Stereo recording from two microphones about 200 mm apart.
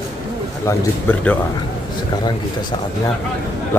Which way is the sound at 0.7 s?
10° left (ahead or behind).